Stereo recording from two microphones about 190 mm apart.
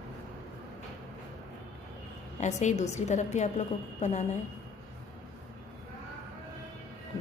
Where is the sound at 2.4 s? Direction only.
35° left (ahead or behind).